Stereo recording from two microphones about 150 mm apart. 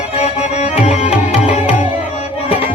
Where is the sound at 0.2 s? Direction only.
50° left (ahead or behind).